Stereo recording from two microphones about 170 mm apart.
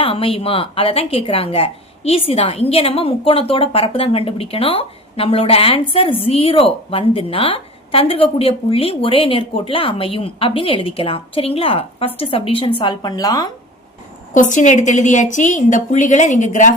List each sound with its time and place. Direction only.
0.0 s a woman's voice: 35° left (ahead or behind)
14.3 s a woman's voice: 45° left (ahead or behind)